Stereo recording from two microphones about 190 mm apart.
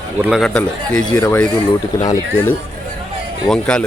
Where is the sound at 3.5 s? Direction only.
5° left (ahead or behind).